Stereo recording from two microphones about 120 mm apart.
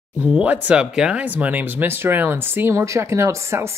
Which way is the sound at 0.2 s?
10° right (ahead or behind).